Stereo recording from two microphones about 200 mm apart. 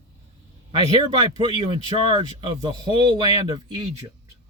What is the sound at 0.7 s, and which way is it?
Speech, 25° right (ahead or behind).